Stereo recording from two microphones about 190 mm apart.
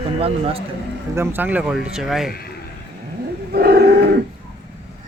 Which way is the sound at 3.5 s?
55° right (ahead or behind).